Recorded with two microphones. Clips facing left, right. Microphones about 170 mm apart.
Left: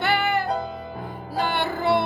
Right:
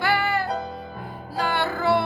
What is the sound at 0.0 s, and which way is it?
Music, 20° left (ahead or behind).